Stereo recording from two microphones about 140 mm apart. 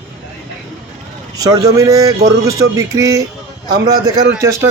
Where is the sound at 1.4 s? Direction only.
25° right (ahead or behind).